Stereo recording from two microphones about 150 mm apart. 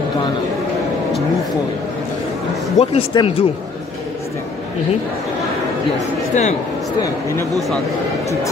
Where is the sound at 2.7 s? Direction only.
35° left (ahead or behind).